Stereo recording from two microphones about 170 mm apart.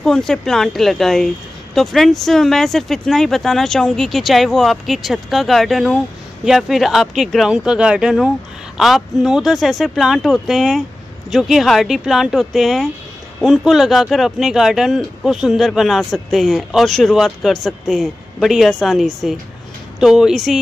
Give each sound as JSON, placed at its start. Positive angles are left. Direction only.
{"t": 0.0, "sound": "speech", "side_deg": 0}